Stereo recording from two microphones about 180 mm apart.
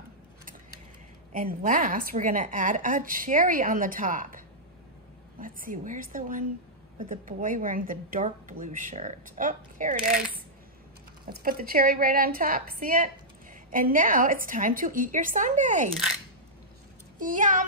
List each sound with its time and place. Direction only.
1.3 s a woman's voice: 50° right (ahead or behind)
5.4 s a woman's voice: 50° right (ahead or behind)
11.2 s a woman's voice: 55° right (ahead or behind)
17.2 s a woman's voice: 45° right (ahead or behind)